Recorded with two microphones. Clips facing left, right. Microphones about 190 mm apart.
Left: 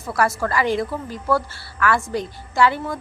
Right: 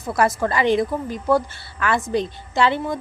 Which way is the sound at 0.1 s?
20° right (ahead or behind).